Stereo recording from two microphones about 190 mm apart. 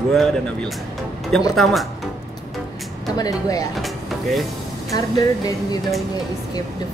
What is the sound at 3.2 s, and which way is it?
Speech, 20° left (ahead or behind).